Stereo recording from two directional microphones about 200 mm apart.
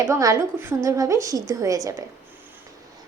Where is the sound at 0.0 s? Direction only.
15° right (ahead or behind).